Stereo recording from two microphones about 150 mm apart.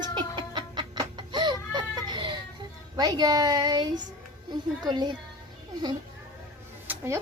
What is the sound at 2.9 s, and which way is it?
Speech, 25° right (ahead or behind).